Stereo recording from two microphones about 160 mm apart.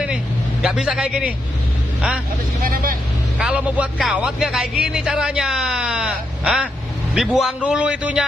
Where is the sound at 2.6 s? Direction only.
60° right (ahead or behind).